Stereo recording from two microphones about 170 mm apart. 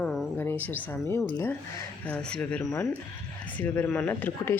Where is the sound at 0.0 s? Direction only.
Centre (ahead or behind).